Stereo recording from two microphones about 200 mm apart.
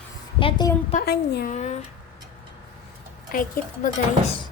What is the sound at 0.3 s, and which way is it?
Speech, 25° left (ahead or behind).